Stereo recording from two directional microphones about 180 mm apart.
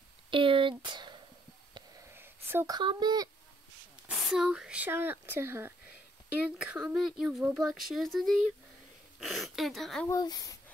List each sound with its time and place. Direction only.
0.3 s a sound: 30° right (ahead or behind)
2.1 s speech: 15° right (ahead or behind)
4.1 s speech: 5° right (ahead or behind)
10.0 s a child's voice: 20° left (ahead or behind)